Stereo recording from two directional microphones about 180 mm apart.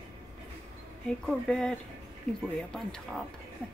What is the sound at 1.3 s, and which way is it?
Speech, 5° left (ahead or behind).